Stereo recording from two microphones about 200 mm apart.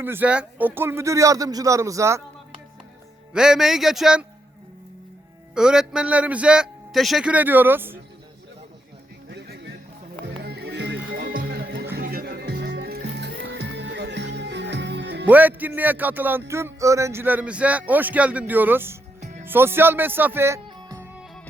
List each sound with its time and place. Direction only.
0.0 s speech: 10° right (ahead or behind)
3.3 s a man's voice: 5° right (ahead or behind)
5.5 s a man's voice: 5° right (ahead or behind)
9.3 s music: 60° right (ahead or behind)
15.3 s speech: 10° right (ahead or behind)